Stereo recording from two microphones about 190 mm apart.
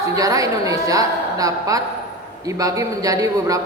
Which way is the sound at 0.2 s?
15° right (ahead or behind).